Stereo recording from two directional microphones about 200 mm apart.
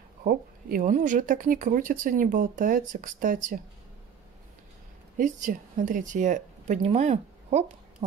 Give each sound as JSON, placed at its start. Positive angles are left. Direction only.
{"t": 0.2, "sound": "speech", "side_deg": -45}
{"t": 5.1, "sound": "speech", "side_deg": -40}